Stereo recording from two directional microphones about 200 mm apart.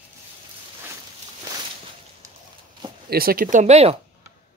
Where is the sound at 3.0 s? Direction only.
50° right (ahead or behind); by 4.0 s 30° right (ahead or behind).